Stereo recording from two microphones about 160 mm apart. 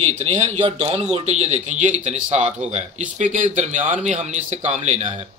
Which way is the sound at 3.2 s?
50° right (ahead or behind).